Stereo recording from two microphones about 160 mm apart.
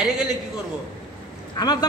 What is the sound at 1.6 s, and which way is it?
Speech, 25° left (ahead or behind).